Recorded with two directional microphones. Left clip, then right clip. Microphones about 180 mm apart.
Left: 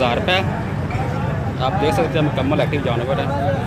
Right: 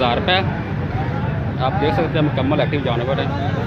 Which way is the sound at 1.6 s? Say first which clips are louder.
Left 1 dB; 5° left (ahead or behind).